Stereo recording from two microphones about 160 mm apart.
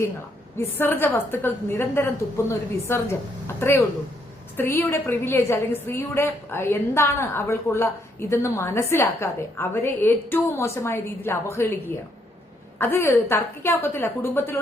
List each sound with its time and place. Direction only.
0.6 s a woman's voice: 15° left (ahead or behind)
12.8 s a woman's voice: 15° left (ahead or behind)